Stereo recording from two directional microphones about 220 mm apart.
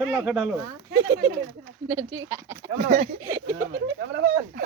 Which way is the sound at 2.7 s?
35° right (ahead or behind).